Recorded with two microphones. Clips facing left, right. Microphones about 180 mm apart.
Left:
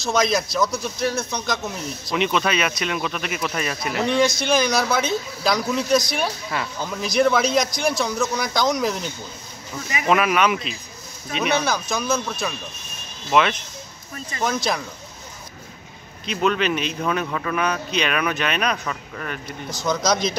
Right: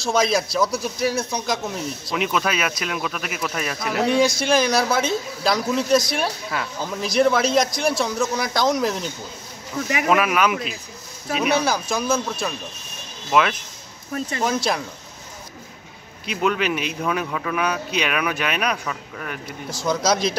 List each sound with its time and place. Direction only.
0.1 s speech: 5° right (ahead or behind)
10.0 s a man's voice: centre (ahead or behind)
14.1 s speech: 65° right (ahead or behind)
14.4 s speech: 5° right (ahead or behind)
16.3 s a man's voice: 10° right (ahead or behind)